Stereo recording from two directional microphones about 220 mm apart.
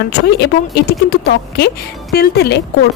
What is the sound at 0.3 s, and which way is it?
A woman's voice, 50° left (ahead or behind).